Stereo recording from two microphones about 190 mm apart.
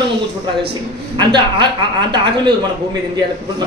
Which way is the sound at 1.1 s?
25° right (ahead or behind).